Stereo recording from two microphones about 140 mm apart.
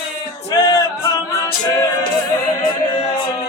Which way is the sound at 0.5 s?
25° left (ahead or behind).